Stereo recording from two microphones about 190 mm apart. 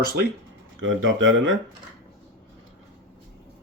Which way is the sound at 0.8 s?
90° right.